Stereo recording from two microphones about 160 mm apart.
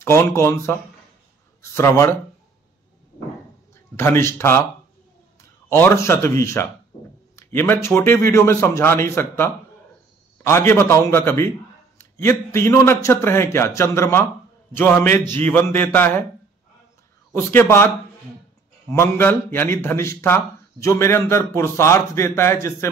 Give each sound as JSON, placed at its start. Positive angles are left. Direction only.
{"t": 0.0, "sound": "a man's voice", "side_deg": 15}
{"t": 3.9, "sound": "a man's voice", "side_deg": 15}
{"t": 5.7, "sound": "a man's voice", "side_deg": 15}
{"t": 17.3, "sound": "a man's voice", "side_deg": 15}
{"t": 18.9, "sound": "a man's voice", "side_deg": 15}